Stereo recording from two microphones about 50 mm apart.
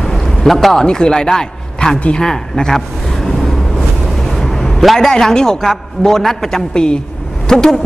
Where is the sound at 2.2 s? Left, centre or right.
Centre.